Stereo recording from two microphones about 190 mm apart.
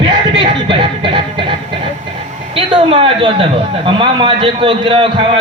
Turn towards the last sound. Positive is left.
turn(degrees=-25)  # may be behind; listen again after turning